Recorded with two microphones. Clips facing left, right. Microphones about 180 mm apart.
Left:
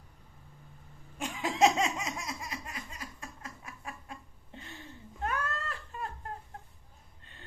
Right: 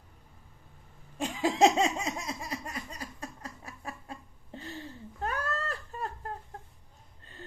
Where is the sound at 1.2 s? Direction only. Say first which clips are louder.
Right 3 dB; 30° right (ahead or behind).